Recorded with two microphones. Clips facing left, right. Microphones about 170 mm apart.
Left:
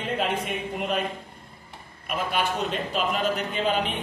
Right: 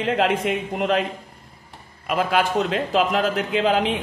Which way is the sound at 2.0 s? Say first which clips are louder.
Right 6 dB; 90° right.